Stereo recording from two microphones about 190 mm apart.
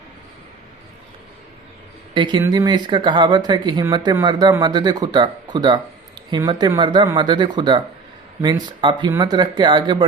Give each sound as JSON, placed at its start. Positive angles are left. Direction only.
{"t": 2.1, "sound": "speech", "side_deg": -25}